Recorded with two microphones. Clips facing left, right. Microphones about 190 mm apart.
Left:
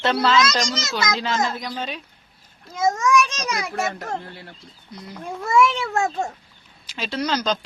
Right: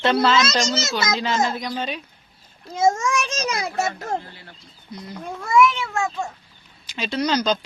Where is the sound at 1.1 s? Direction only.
5° right (ahead or behind).